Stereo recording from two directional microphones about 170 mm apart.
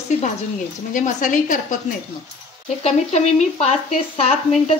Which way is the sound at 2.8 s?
40° left (ahead or behind).